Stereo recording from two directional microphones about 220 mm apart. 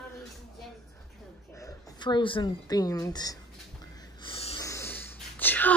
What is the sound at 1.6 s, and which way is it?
Speech, 20° left (ahead or behind).